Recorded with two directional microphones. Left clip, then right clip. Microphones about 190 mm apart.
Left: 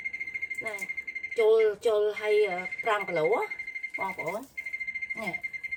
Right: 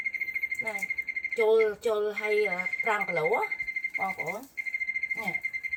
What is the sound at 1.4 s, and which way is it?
Speech, 30° left (ahead or behind).